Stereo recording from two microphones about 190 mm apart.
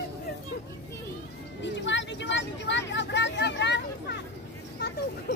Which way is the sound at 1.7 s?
70° left (ahead or behind).